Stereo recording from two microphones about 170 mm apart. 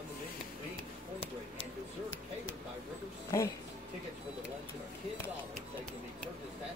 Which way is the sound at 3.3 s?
15° left (ahead or behind).